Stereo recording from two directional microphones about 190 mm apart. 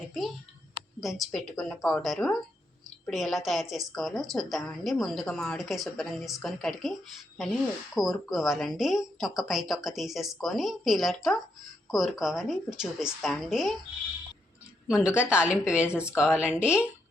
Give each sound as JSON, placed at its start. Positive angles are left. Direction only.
{"t": 1.0, "sound": "a woman's voice", "side_deg": 0}
{"t": 7.9, "sound": "a woman's voice", "side_deg": 0}
{"t": 14.8, "sound": "a woman's voice", "side_deg": -5}